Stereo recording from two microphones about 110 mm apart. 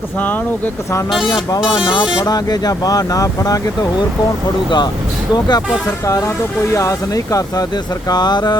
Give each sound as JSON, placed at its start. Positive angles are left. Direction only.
{"t": 1.3, "sound": "speech", "side_deg": 35}
{"t": 1.6, "sound": "speech", "side_deg": -5}
{"t": 2.2, "sound": "speech", "side_deg": 35}
{"t": 5.3, "sound": "speech", "side_deg": 40}
{"t": 6.1, "sound": "speech", "side_deg": 30}